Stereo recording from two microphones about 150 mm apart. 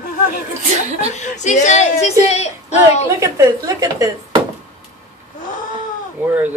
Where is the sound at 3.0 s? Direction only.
20° right (ahead or behind).